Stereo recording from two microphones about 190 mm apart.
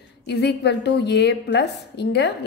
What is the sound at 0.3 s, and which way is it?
A woman's voice, 60° left (ahead or behind).